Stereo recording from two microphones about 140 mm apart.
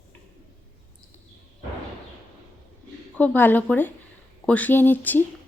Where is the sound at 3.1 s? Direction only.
10° left (ahead or behind).